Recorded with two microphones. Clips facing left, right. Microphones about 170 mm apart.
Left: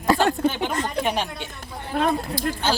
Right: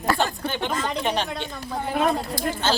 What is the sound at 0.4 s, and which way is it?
Speech, 5° left (ahead or behind).